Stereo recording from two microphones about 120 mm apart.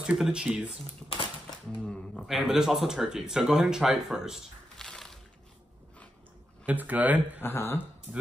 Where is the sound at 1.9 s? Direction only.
Centre (ahead or behind).